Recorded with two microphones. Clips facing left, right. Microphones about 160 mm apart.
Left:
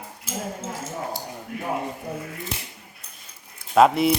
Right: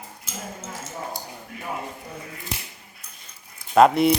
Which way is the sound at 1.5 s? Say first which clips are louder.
Left 8 dB; 65° left (ahead or behind).